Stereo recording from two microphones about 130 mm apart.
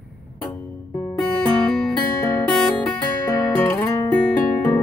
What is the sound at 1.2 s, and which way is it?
Music, 5° left (ahead or behind).